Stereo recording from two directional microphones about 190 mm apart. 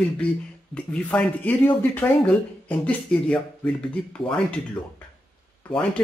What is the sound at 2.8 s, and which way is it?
Speech, 5° left (ahead or behind).